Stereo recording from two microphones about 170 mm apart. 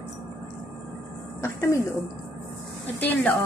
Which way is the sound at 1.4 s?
15° left (ahead or behind).